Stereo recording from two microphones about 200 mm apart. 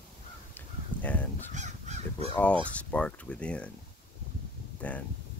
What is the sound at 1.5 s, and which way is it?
Crow, 35° right (ahead or behind).